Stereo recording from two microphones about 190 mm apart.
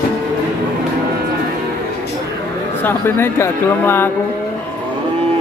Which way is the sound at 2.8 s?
10° left (ahead or behind).